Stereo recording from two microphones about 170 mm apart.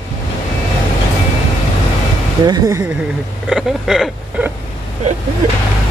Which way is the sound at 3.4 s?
Centre (ahead or behind).